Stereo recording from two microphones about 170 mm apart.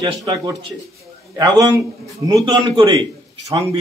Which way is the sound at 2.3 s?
25° right (ahead or behind).